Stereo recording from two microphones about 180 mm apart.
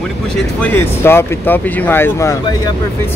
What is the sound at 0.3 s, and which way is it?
Speech, 5° left (ahead or behind).